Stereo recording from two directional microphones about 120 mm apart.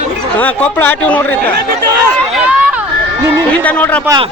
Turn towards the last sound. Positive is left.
turn(degrees=10)  # may be behind; listen again after turning